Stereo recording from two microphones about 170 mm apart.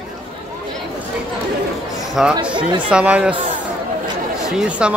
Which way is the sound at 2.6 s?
30° right (ahead or behind).